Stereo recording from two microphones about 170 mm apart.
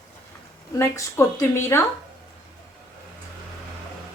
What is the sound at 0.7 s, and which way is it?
A woman's voice, 15° left (ahead or behind).